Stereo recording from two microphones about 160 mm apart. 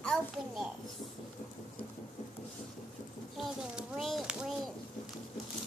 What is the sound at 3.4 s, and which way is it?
A child's voice, centre (ahead or behind).